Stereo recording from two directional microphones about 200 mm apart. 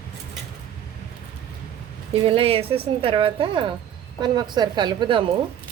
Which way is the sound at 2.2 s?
30° right (ahead or behind).